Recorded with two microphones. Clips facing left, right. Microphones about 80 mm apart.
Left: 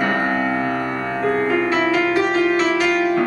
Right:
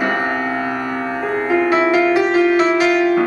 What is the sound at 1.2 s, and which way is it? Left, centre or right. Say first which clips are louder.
Music: right 1 dB; centre.